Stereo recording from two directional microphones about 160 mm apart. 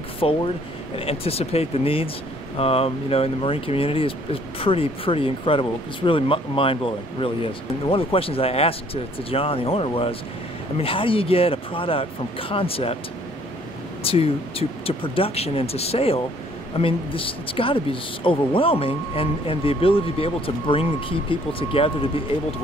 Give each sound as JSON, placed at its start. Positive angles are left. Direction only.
{"t": 0.2, "sound": "speech", "side_deg": 40}
{"t": 14.0, "sound": "speech", "side_deg": 35}